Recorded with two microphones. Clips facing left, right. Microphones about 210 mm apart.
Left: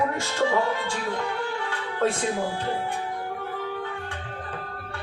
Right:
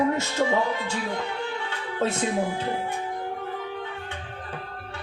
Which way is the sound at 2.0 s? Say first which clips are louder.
Even; 25° right (ahead or behind).